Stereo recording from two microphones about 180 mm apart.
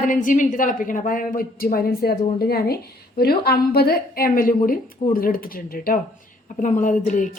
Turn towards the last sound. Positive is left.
turn(degrees=45)  # may be behind; listen again after turning